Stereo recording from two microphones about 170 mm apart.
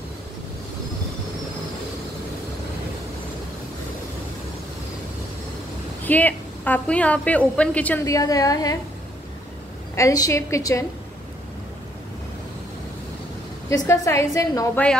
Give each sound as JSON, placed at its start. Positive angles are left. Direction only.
{"t": 6.0, "sound": "a woman's voice", "side_deg": 10}
{"t": 8.0, "sound": "a woman's voice", "side_deg": 20}
{"t": 9.9, "sound": "a woman's voice", "side_deg": 20}
{"t": 13.7, "sound": "a woman's voice", "side_deg": 15}